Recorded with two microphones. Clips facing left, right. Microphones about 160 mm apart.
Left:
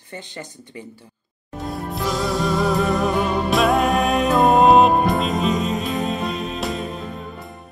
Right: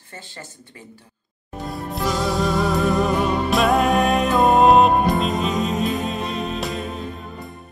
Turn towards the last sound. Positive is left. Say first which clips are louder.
# even
turn(degrees=0)  # may be behind; listen again after turning